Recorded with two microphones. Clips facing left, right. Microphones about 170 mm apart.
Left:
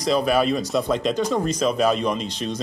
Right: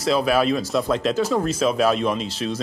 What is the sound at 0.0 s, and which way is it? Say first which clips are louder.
Speech: even; centre (ahead or behind).